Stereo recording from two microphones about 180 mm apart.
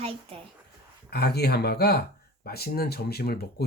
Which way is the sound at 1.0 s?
60° left (ahead or behind).